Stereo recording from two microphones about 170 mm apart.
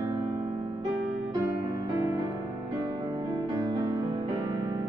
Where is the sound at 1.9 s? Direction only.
20° right (ahead or behind).